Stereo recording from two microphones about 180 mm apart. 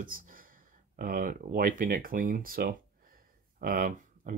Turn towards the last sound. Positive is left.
turn(degrees=-50)  # may be behind; listen again after turning